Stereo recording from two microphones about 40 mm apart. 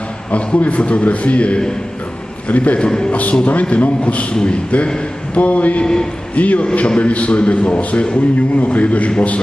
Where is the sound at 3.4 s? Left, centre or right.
Left.